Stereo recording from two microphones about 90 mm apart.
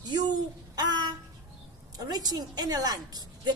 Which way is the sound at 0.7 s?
50° right (ahead or behind).